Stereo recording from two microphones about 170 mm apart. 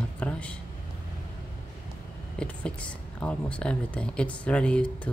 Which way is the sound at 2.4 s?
5° left (ahead or behind).